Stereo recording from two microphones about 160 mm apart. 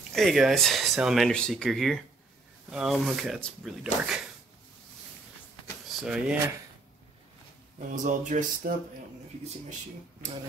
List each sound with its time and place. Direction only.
0.1 s speech: centre (ahead or behind)
5.9 s speech: 5° right (ahead or behind)
7.9 s speech: 50° right (ahead or behind)